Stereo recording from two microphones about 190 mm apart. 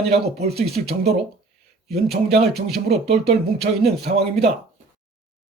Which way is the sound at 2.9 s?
35° right (ahead or behind).